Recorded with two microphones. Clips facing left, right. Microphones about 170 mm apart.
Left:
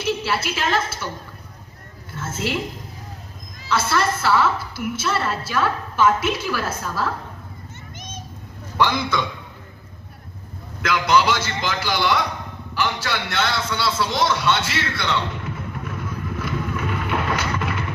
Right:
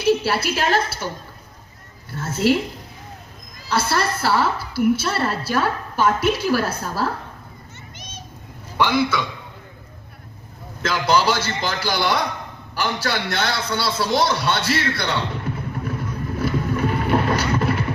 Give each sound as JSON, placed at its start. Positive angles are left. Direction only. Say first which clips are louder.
{"t": 0.0, "sound": "a woman's voice", "louder": "right 5 dB", "side_deg": -40}
{"t": 2.1, "sound": "a woman's voice", "louder": "right 7 dB", "side_deg": -35}
{"t": 3.7, "sound": "a woman's voice", "louder": "even", "side_deg": -35}
{"t": 7.9, "sound": "children playing", "louder": "left 4 dB", "side_deg": 50}
{"t": 8.8, "sound": "a man's voice", "louder": "right 2 dB", "side_deg": -10}
{"t": 10.8, "sound": "a woman's voice", "louder": "even", "side_deg": -30}
{"t": 15.8, "sound": "a sound", "louder": "right 3 dB", "side_deg": -35}